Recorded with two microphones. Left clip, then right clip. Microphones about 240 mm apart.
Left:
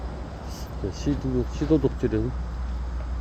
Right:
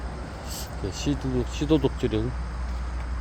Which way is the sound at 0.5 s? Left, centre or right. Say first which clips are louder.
Right 1 dB; centre.